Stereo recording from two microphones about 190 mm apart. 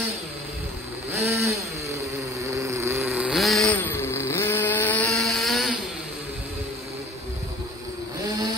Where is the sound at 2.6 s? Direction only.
15° right (ahead or behind).